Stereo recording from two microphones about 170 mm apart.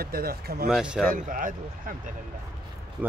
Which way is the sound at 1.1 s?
55° right (ahead or behind).